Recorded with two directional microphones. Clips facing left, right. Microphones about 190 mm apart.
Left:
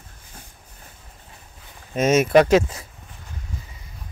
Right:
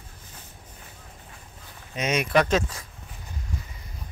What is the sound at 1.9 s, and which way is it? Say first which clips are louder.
Speech: left 8 dB; 45° left (ahead or behind).